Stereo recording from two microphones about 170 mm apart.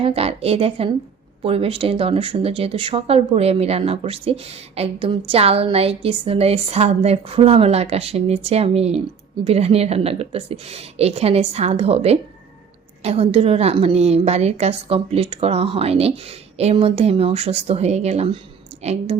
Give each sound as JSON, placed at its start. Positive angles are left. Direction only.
{"t": 0.0, "sound": "speech", "side_deg": -35}